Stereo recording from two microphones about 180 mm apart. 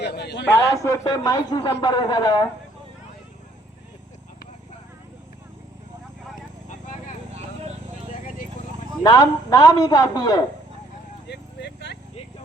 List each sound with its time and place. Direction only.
0.0 s a man's voice: 65° left (ahead or behind)
0.4 s a man's voice: 15° left (ahead or behind)
9.0 s a man's voice: 20° left (ahead or behind)
11.3 s clip-clop: 70° left (ahead or behind)